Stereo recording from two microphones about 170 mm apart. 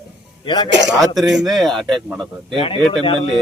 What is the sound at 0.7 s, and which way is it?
Speech, 90° right.